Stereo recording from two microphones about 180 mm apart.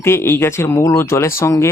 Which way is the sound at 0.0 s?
15° left (ahead or behind).